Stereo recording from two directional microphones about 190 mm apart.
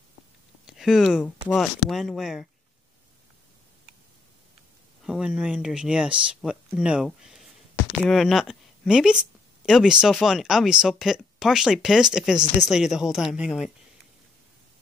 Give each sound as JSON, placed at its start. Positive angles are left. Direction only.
{"t": 0.7, "sound": "speech", "side_deg": -5}
{"t": 5.0, "sound": "speech", "side_deg": 0}